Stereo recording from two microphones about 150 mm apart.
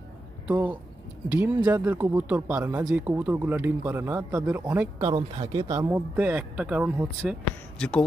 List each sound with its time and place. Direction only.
0.5 s speech: 10° right (ahead or behind)
5.0 s speech: 40° right (ahead or behind)
5.6 s speech: 20° right (ahead or behind)
7.8 s speech: 5° left (ahead or behind)